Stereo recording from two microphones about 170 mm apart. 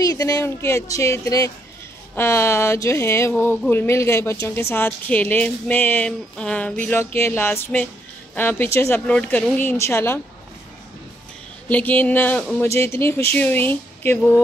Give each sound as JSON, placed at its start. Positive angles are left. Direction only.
{"t": 0.0, "sound": "speech", "side_deg": 20}
{"t": 11.7, "sound": "speech", "side_deg": 10}